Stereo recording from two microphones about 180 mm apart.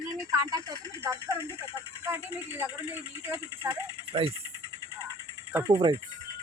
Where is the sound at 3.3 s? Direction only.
15° right (ahead or behind).